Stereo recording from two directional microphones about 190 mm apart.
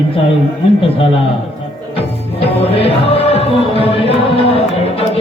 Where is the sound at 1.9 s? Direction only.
30° left (ahead or behind).